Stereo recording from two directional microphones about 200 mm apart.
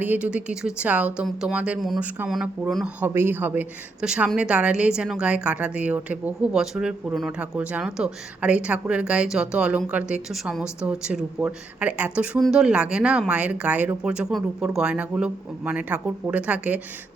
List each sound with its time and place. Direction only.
0.0 s speech: 5° right (ahead or behind)